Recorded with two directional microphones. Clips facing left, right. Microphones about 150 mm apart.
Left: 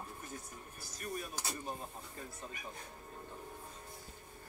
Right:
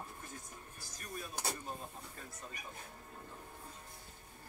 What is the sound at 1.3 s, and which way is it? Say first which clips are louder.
Vehicle: right 1 dB; 55° right (ahead or behind).